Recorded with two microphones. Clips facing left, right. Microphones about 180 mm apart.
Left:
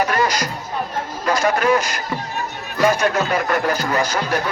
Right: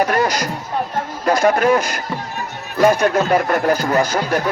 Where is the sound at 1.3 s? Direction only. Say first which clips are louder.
Right 3 dB; 55° right (ahead or behind).